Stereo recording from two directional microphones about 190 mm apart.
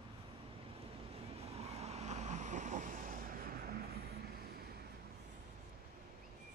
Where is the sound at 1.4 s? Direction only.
35° right (ahead or behind); by 4.0 s 55° right (ahead or behind).